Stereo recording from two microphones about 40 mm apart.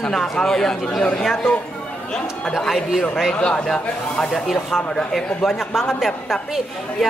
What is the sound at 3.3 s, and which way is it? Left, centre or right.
A woman's voice, left.